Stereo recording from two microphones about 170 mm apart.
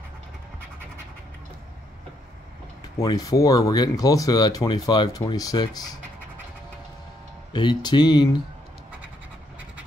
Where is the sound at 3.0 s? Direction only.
20° left (ahead or behind).